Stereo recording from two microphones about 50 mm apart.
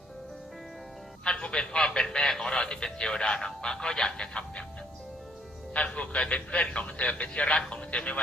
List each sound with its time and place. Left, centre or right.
1.2 s a man's voice: centre
5.7 s speech: left